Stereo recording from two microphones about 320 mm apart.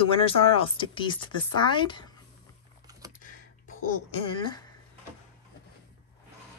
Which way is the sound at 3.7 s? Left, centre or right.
Left.